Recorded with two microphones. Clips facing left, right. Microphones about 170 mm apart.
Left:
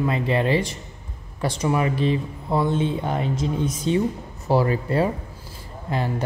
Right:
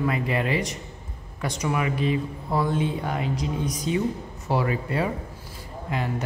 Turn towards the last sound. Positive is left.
turn(degrees=35)  # may be behind; listen again after turning